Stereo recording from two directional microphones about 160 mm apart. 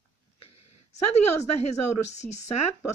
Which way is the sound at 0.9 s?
45° left (ahead or behind).